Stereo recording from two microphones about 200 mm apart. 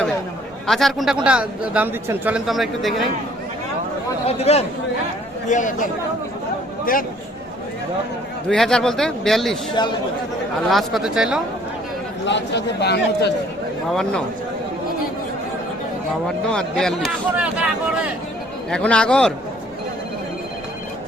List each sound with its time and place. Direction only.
0.7 s a man's voice: centre (ahead or behind)
4.3 s speech: 30° left (ahead or behind)
8.4 s a man's voice: 5° left (ahead or behind)
10.7 s a man's voice: centre (ahead or behind)
12.2 s a man's voice: 60° left (ahead or behind)
13.9 s a man's voice: 5° left (ahead or behind)
16.5 s a man's voice: 5° left (ahead or behind)
18.7 s a man's voice: 5° left (ahead or behind)